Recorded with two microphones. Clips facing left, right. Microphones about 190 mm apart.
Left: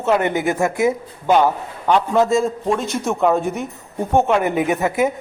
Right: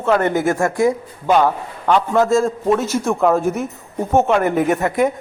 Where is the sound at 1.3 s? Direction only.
5° left (ahead or behind).